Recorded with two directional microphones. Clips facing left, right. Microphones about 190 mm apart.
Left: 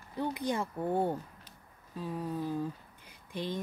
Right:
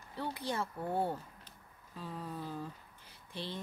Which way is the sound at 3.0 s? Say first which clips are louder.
Left 6 dB; 15° left (ahead or behind).